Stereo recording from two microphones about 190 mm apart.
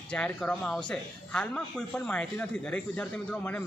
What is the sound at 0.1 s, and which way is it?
A man's voice, 5° left (ahead or behind).